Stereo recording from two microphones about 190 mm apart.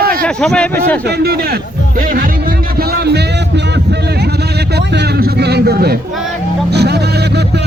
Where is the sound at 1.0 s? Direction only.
55° right (ahead or behind).